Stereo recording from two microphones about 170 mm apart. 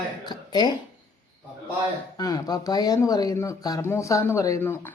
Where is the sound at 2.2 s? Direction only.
20° left (ahead or behind).